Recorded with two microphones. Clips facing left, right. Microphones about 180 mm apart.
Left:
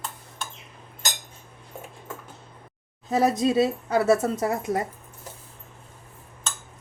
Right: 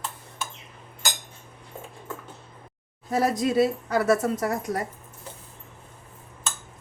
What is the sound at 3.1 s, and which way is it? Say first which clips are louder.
Speech: left 2 dB; 25° left (ahead or behind).